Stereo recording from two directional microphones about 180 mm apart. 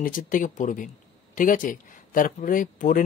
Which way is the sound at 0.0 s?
50° left (ahead or behind).